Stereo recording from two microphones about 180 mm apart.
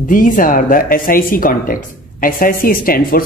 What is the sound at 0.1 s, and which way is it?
Speech, 50° left (ahead or behind).